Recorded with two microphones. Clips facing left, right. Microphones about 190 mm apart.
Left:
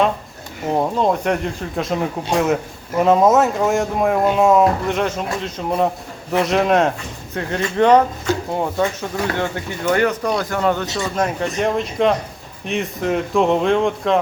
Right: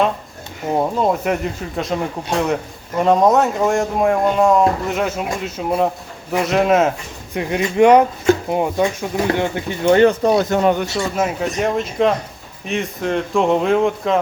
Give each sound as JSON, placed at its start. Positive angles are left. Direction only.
{"t": 0.7, "sound": "speech", "side_deg": -5}
{"t": 7.3, "sound": "speech", "side_deg": -15}
{"t": 10.9, "sound": "speech", "side_deg": -5}